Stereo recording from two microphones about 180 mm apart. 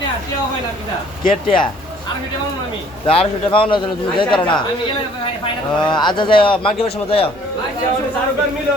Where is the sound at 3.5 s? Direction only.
30° left (ahead or behind).